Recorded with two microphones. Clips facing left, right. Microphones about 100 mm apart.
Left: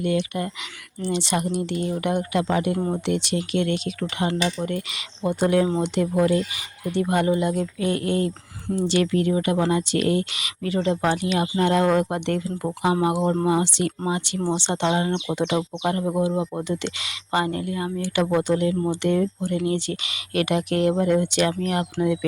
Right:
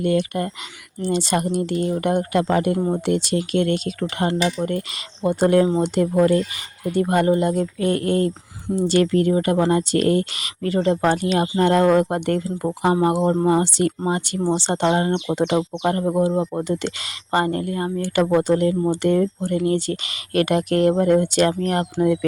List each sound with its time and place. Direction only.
0.0 s speech: 45° right (ahead or behind)
2.7 s speech: 15° right (ahead or behind)
3.1 s speech: 40° right (ahead or behind)